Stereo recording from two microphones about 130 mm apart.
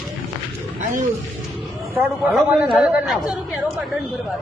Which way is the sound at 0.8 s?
80° right.